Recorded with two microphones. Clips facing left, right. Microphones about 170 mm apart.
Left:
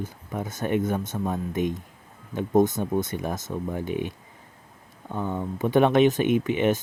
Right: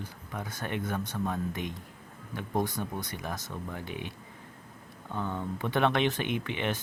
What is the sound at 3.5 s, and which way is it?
Speech, 20° left (ahead or behind).